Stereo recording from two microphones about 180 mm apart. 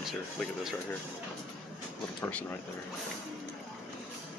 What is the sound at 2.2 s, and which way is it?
Speech, 10° left (ahead or behind).